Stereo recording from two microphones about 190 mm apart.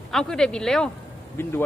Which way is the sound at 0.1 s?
Centre (ahead or behind).